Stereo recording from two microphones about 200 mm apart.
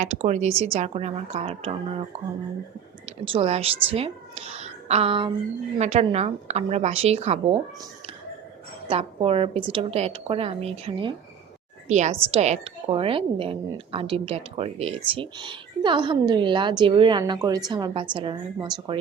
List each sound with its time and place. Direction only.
0.0 s a woman's voice: 35° right (ahead or behind)
3.1 s a woman's voice: 30° right (ahead or behind)
8.9 s a woman's voice: 30° right (ahead or behind)